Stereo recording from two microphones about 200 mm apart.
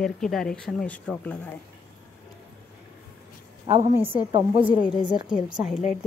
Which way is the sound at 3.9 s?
10° right (ahead or behind).